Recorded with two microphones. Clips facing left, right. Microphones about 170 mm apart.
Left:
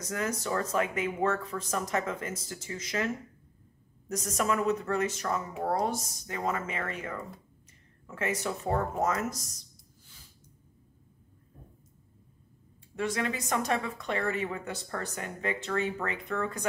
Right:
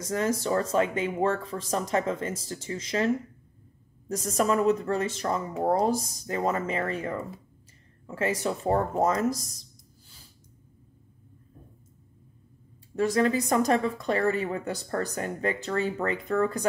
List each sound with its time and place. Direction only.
0.0 s speech: 30° right (ahead or behind)
4.1 s speech: 30° right (ahead or behind)
12.9 s speech: 40° right (ahead or behind)